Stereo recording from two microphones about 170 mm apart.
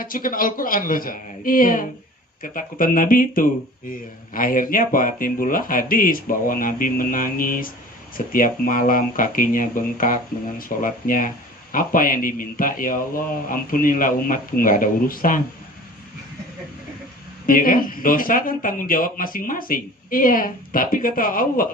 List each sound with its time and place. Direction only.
0.0 s speech: 55° left (ahead or behind)
17.4 s speech: 55° left (ahead or behind)